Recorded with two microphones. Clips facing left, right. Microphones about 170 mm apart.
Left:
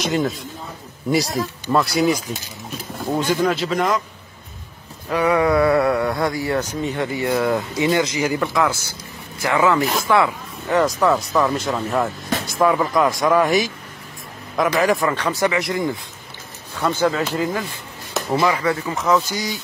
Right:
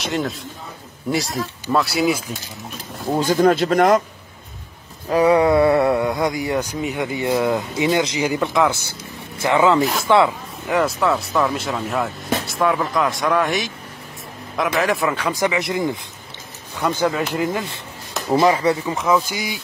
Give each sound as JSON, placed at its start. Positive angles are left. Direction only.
{"t": 0.0, "sound": "speech", "side_deg": 0}
{"t": 3.2, "sound": "speech", "side_deg": -40}
{"t": 5.1, "sound": "speech", "side_deg": -30}
{"t": 11.0, "sound": "speech", "side_deg": -5}